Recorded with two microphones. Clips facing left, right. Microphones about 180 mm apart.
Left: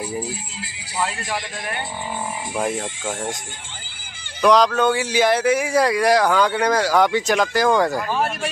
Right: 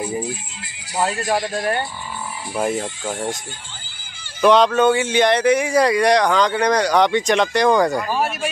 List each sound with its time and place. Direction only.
1.2 s speech: 45° right (ahead or behind)
2.5 s speech: centre (ahead or behind)
4.4 s speech: centre (ahead or behind)